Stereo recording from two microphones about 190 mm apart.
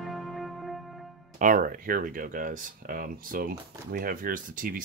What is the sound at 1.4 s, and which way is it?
Speech, 45° right (ahead or behind).